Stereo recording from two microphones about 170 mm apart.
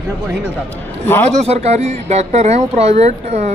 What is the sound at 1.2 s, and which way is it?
Speech, 40° right (ahead or behind).